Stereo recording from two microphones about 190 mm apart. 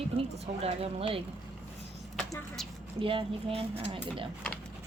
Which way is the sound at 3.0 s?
30° right (ahead or behind).